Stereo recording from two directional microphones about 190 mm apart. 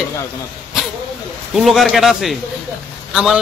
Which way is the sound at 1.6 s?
Centre (ahead or behind).